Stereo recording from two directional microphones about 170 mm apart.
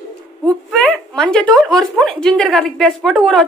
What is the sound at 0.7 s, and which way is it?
A woman's voice, 5° left (ahead or behind).